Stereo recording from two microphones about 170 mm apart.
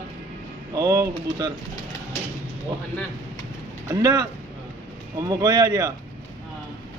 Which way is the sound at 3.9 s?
25° right (ahead or behind).